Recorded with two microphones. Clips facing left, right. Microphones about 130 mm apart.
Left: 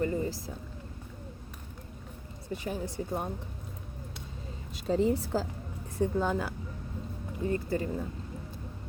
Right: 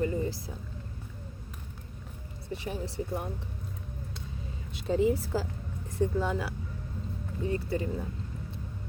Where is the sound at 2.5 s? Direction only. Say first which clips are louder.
Left 1 dB; 40° left (ahead or behind).